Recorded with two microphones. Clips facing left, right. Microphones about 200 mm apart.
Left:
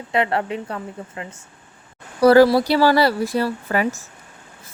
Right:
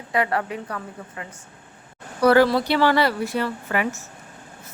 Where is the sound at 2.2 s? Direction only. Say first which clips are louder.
Left 4 dB; 35° left (ahead or behind).